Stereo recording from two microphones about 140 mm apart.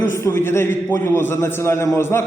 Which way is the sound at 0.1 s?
20° left (ahead or behind).